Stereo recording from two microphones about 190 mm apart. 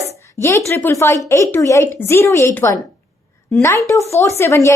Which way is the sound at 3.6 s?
15° left (ahead or behind).